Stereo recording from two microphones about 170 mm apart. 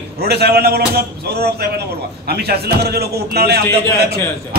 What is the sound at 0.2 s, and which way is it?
A man's voice, 70° right (ahead or behind).